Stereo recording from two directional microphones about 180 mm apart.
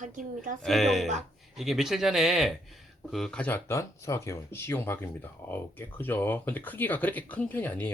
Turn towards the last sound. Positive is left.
turn(degrees=10)  # may be behind; listen again after turning